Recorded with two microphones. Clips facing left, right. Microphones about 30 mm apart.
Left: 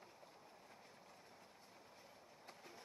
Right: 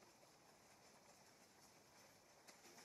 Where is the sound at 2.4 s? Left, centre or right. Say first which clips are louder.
Left 7 dB; left.